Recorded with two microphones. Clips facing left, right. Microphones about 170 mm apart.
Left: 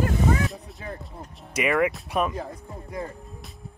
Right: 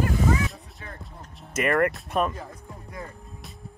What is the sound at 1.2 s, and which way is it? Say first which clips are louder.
Speech: right 1 dB; 5° left (ahead or behind).